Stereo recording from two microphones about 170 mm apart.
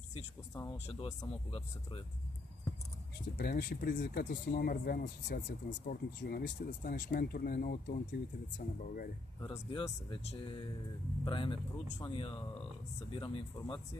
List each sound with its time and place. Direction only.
0.5 s speech: 25° left (ahead or behind)
3.3 s speech: 70° left (ahead or behind)
9.4 s speech: 25° left (ahead or behind)